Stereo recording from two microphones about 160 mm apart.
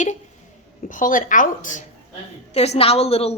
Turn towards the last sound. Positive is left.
turn(degrees=40)  # may be behind; listen again after turning